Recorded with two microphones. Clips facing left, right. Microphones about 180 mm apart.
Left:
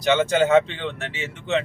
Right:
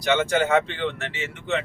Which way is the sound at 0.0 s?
20° left (ahead or behind).